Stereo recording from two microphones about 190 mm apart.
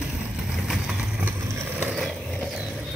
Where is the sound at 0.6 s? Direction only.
5° right (ahead or behind).